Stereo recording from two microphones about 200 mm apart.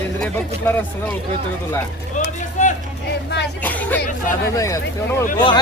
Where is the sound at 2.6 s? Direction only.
40° left (ahead or behind).